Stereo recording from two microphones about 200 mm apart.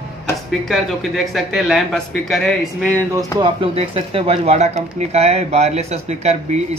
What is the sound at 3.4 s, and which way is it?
Speech, 25° right (ahead or behind).